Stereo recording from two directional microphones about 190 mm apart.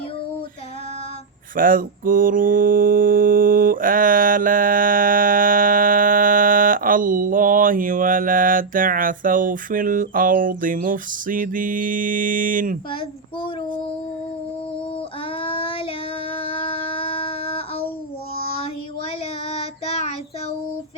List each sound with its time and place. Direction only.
1.5 s mantra: 45° right (ahead or behind)
15.4 s child singing: 30° left (ahead or behind)
16.3 s a sound: 30° left (ahead or behind)
18.3 s child singing: 30° left (ahead or behind)